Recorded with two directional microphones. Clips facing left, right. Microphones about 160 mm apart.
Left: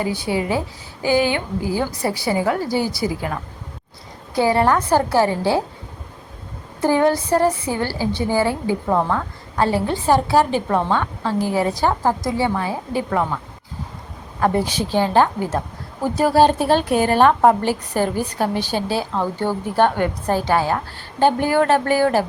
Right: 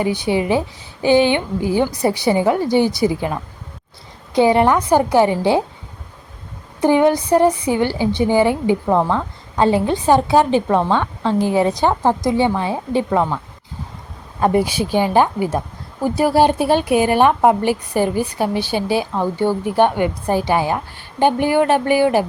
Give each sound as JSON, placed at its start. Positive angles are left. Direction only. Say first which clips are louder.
{"t": 0.0, "sound": "a woman's voice", "louder": "right 4 dB", "side_deg": -20}
{"t": 4.4, "sound": "a woman's voice", "louder": "right 3 dB", "side_deg": -20}
{"t": 6.8, "sound": "a woman's voice", "louder": "right 3 dB", "side_deg": -20}